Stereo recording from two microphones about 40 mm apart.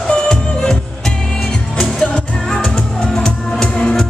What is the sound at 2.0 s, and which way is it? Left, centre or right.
Music, left.